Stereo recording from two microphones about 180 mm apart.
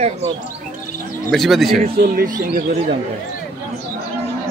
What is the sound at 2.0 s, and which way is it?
Speech, 55° right (ahead or behind).